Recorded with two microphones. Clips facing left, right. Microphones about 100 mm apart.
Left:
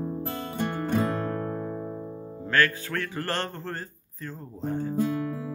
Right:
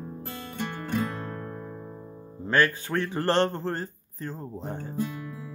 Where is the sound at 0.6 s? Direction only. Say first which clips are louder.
Left 3 dB; 35° left (ahead or behind).